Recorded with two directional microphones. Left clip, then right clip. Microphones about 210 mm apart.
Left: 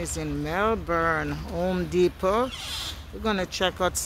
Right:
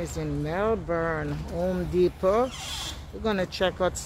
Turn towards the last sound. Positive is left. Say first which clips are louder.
# even
turn(degrees=20)  # may be behind; listen again after turning